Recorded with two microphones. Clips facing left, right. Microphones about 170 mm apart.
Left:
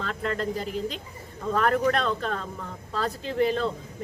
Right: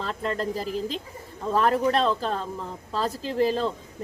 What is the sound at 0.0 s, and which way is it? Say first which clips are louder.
Speech: right 1 dB; 35° right (ahead or behind).